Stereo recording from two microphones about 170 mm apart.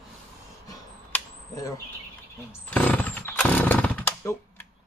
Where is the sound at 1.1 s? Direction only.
20° left (ahead or behind).